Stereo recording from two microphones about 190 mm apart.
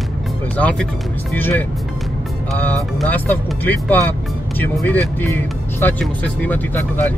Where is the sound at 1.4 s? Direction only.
10° left (ahead or behind).